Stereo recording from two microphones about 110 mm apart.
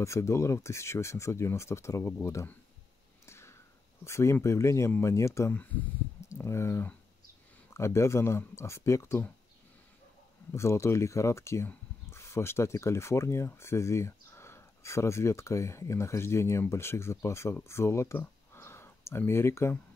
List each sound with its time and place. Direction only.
0.0 s speech: 25° left (ahead or behind)
3.3 s a sound: 25° left (ahead or behind)
4.0 s speech: 25° left (ahead or behind)
10.5 s speech: 25° left (ahead or behind)